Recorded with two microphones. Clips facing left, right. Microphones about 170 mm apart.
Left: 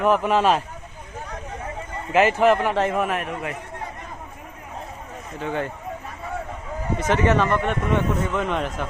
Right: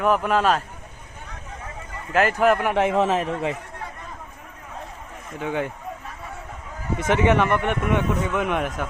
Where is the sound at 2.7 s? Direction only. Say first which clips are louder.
Right 1 dB; 15° right (ahead or behind).